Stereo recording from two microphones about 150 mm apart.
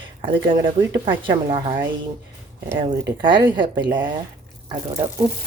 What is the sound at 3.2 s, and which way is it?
Speech, 30° right (ahead or behind).